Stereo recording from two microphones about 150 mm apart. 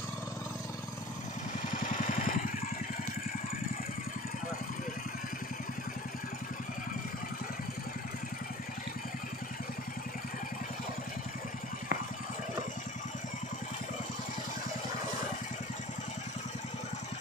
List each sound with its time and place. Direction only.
1.7 s vehicle: 60° left (ahead or behind)